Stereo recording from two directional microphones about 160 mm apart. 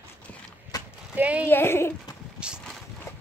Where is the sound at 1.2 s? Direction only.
10° right (ahead or behind).